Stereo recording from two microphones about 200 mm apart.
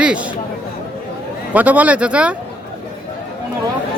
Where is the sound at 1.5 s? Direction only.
5° right (ahead or behind).